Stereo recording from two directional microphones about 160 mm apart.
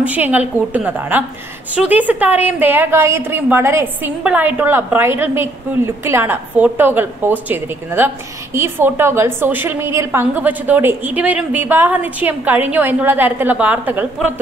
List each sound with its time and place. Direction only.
0.0 s a woman's voice: 10° right (ahead or behind)